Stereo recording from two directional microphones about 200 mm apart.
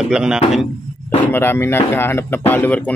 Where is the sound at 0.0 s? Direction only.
5° right (ahead or behind).